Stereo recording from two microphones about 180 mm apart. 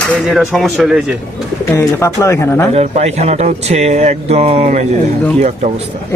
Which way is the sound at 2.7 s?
35° right (ahead or behind).